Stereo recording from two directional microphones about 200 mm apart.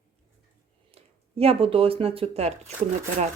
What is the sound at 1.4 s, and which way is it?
A woman's voice, 30° right (ahead or behind).